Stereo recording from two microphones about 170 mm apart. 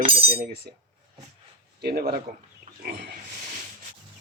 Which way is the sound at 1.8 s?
65° right (ahead or behind).